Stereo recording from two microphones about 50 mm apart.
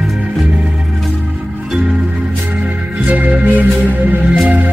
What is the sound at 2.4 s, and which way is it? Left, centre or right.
Music, right.